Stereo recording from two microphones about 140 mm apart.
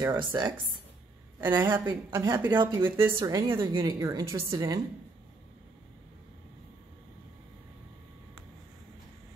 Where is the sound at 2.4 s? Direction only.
35° right (ahead or behind).